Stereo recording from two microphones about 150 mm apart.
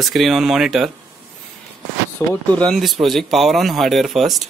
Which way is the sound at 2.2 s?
20° left (ahead or behind).